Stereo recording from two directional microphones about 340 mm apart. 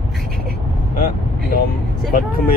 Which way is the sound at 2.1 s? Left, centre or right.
Left.